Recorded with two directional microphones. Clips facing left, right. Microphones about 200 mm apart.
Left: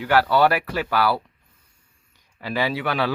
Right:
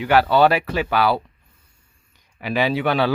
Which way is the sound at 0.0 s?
20° right (ahead or behind).